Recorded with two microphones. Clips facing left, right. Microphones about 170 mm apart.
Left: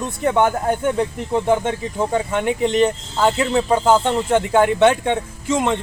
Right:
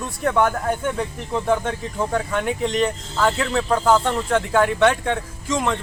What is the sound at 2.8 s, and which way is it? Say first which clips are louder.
Speech: left 3 dB; 25° left (ahead or behind).